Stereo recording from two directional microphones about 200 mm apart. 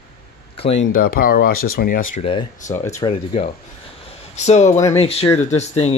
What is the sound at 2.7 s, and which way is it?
Speech, 15° left (ahead or behind).